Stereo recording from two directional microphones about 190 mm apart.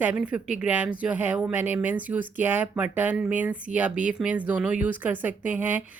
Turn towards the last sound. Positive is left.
turn(degrees=-10)  # may be behind; listen again after turning